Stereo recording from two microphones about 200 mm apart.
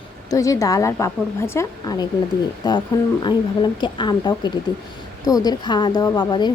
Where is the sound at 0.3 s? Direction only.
15° left (ahead or behind).